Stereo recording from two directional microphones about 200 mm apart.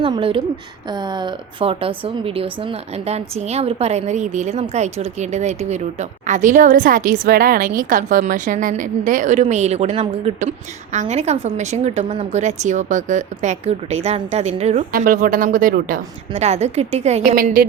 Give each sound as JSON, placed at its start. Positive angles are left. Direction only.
{"t": 0.0, "sound": "a woman's voice", "side_deg": -25}
{"t": 17.3, "sound": "a woman's voice", "side_deg": -45}